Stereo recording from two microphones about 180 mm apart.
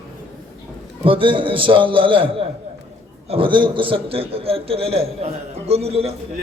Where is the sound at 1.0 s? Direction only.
30° right (ahead or behind).